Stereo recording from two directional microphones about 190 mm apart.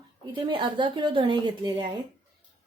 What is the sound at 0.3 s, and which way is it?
Speech, 25° right (ahead or behind).